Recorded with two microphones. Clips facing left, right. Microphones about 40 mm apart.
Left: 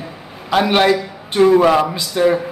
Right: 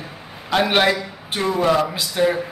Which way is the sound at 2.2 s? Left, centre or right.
Centre.